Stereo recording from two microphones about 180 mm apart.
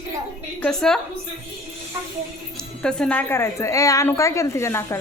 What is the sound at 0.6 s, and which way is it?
Speech, 5° left (ahead or behind).